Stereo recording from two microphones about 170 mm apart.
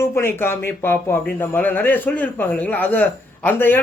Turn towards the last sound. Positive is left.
turn(degrees=10)  # may be behind; listen again after turning